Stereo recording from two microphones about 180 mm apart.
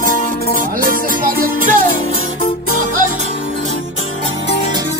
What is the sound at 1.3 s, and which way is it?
Music, 50° right (ahead or behind).